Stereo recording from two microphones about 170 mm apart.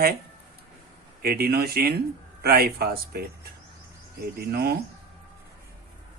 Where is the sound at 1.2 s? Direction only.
65° right (ahead or behind).